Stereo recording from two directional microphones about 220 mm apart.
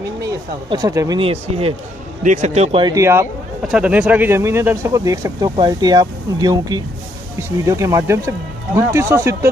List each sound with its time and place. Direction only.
0.2 s speech: 15° right (ahead or behind)